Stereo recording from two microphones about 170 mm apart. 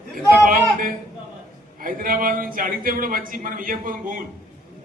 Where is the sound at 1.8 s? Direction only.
55° right (ahead or behind).